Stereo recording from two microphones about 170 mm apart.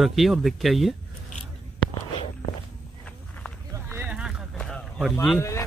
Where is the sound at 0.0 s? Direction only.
Centre (ahead or behind).